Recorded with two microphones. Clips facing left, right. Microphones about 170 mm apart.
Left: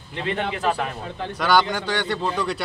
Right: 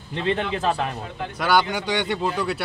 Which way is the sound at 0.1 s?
30° right (ahead or behind).